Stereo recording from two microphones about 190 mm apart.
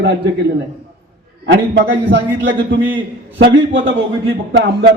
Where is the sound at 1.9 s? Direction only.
65° right (ahead or behind).